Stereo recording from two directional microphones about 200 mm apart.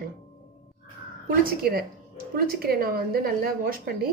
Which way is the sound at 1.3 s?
50° right (ahead or behind).